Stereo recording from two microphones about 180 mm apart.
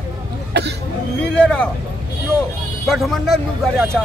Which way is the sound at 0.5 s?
70° right (ahead or behind).